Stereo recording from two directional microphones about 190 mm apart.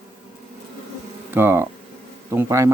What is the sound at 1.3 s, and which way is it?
A man's voice, 10° right (ahead or behind).